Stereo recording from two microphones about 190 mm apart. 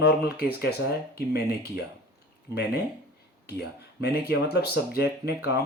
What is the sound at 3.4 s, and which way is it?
Speech, 55° left (ahead or behind).